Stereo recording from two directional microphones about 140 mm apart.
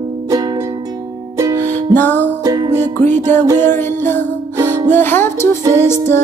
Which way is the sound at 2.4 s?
30° right (ahead or behind).